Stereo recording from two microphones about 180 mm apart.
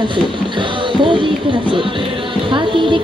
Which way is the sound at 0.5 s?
25° right (ahead or behind).